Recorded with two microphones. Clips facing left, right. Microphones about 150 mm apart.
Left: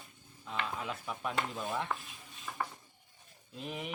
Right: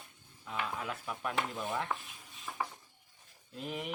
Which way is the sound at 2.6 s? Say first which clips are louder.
Even; 5° right (ahead or behind).